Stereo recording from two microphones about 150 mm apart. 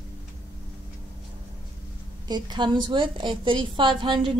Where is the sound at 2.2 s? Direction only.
30° right (ahead or behind).